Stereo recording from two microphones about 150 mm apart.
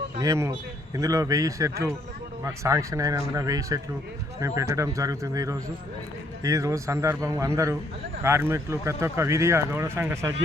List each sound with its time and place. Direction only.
0.2 s speech: 20° right (ahead or behind)